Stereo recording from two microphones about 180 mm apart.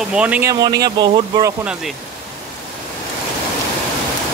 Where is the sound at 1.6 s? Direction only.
5° right (ahead or behind).